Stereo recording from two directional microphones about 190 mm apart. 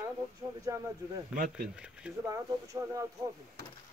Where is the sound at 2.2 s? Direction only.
15° right (ahead or behind).